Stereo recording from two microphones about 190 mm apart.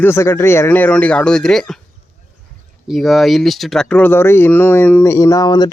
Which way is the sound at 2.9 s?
Centre (ahead or behind).